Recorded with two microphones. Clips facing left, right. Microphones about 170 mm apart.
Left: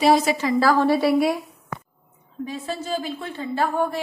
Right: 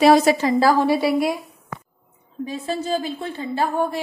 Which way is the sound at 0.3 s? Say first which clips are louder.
Right 4 dB; 30° right (ahead or behind).